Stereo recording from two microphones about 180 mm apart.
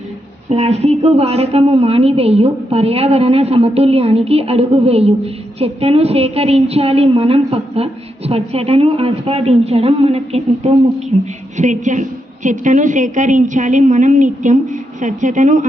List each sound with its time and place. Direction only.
0.5 s a woman's voice: 35° right (ahead or behind)